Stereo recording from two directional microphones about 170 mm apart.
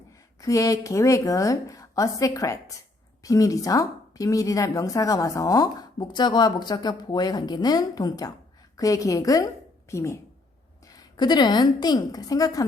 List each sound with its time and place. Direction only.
0.4 s a woman's voice: 20° left (ahead or behind)